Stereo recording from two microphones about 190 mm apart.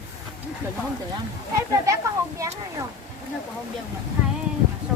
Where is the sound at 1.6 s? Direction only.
15° right (ahead or behind).